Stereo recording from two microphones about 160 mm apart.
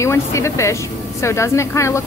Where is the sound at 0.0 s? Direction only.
20° left (ahead or behind).